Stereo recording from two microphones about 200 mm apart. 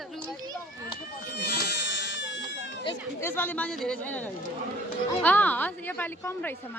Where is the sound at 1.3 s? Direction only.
55° left (ahead or behind).